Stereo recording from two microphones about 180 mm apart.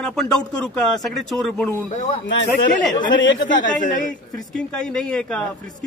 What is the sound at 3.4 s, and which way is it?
Speech, 45° left (ahead or behind).